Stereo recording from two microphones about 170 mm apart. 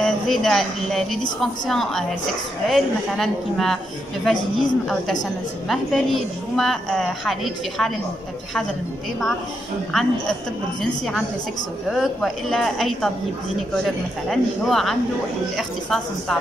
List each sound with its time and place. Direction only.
0.0 s a woman's voice: centre (ahead or behind)
5.7 s a woman's voice: centre (ahead or behind)
9.9 s a woman's voice: centre (ahead or behind)
11.9 s a woman's voice: centre (ahead or behind)
14.3 s a woman's voice: centre (ahead or behind)